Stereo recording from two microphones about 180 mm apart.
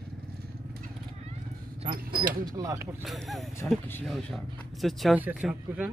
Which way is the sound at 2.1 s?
50° right (ahead or behind).